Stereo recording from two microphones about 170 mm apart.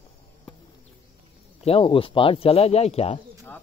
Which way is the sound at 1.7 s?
35° left (ahead or behind).